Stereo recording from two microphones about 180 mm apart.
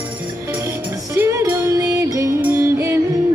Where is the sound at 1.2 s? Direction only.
15° right (ahead or behind).